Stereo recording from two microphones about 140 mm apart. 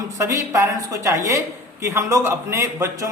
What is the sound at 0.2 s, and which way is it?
Speech, 20° right (ahead or behind).